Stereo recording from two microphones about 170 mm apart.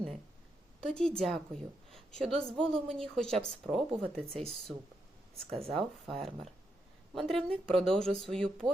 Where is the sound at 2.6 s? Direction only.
5° left (ahead or behind).